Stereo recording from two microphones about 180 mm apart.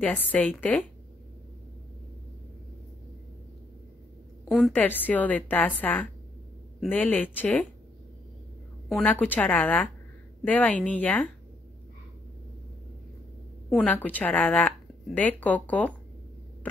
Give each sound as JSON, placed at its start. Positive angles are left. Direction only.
{"t": 0.0, "sound": "a woman's voice", "side_deg": 10}
{"t": 4.5, "sound": "a woman's voice", "side_deg": 0}
{"t": 8.8, "sound": "a woman's voice", "side_deg": 5}
{"t": 13.7, "sound": "a woman's voice", "side_deg": 5}